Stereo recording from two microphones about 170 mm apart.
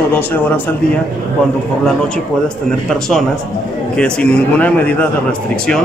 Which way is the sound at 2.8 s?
5° left (ahead or behind).